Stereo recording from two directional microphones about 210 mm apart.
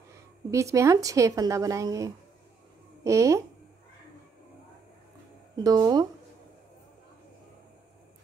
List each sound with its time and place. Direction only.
0.5 s speech: 15° right (ahead or behind)
5.6 s speech: 20° right (ahead or behind)